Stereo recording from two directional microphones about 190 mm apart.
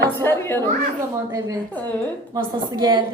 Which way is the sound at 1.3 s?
15° right (ahead or behind).